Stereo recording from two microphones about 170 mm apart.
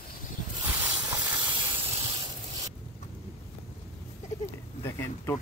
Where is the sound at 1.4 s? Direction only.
30° right (ahead or behind).